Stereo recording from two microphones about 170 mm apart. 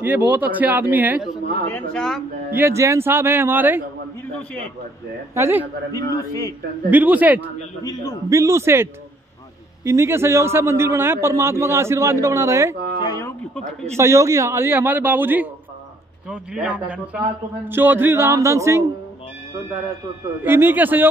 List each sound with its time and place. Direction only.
0.0 s a man's voice: 10° right (ahead or behind)
1.7 s speech: centre (ahead or behind)
2.5 s a man's voice: 15° right (ahead or behind)
5.3 s a man's voice: 15° right (ahead or behind)
5.9 s a man's voice: 20° left (ahead or behind)
6.9 s a man's voice: 10° right (ahead or behind)
9.8 s a man's voice: 15° right (ahead or behind)
13.0 s a sound: 20° left (ahead or behind)
13.9 s a man's voice: 15° right (ahead or behind)
20.4 s a man's voice: 10° right (ahead or behind)